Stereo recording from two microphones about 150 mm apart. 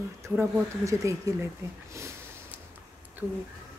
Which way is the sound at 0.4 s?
20° right (ahead or behind).